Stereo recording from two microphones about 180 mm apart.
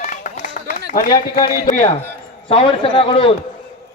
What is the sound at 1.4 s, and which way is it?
Speech, 50° left (ahead or behind).